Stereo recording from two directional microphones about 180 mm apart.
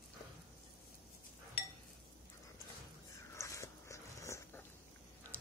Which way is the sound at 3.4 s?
15° left (ahead or behind).